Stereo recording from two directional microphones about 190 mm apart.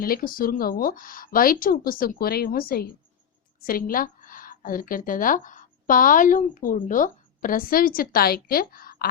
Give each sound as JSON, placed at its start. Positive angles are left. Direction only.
{"t": 0.0, "sound": "a woman's voice", "side_deg": 50}